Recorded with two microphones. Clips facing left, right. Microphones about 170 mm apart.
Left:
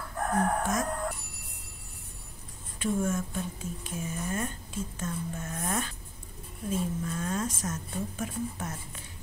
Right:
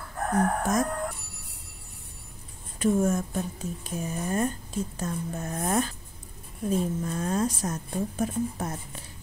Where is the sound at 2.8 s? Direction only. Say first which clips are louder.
Right 5 dB; 40° right (ahead or behind).